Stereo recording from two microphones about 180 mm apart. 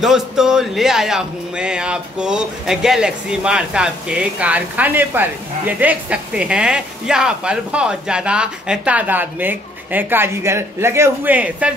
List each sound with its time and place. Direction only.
0.0 s speech: centre (ahead or behind)